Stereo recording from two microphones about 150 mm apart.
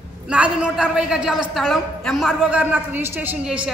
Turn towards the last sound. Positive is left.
turn(degrees=-10)  # may be behind; listen again after turning